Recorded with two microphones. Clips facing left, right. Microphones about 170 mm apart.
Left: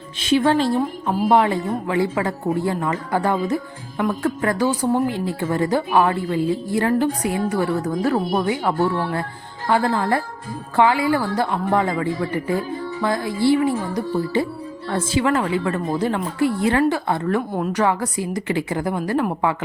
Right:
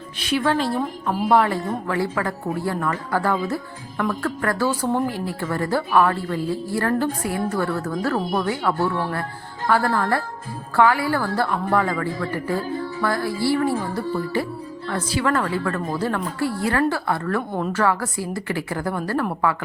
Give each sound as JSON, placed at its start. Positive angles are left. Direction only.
{"t": 0.2, "sound": "a woman's voice", "side_deg": 25}